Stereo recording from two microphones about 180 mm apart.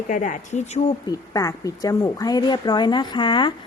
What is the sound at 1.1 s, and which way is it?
Speech, 20° left (ahead or behind).